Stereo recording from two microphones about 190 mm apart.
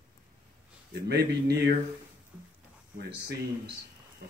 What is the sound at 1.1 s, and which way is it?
Speech, 60° right (ahead or behind).